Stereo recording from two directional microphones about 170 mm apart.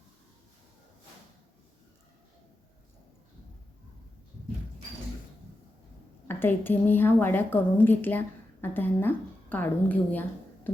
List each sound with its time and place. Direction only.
6.2 s a woman's voice: 10° left (ahead or behind)